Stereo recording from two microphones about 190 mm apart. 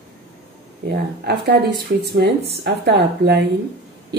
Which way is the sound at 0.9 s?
60° right (ahead or behind).